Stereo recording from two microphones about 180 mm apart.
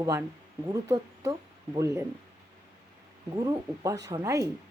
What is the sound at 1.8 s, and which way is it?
Speech, 15° right (ahead or behind).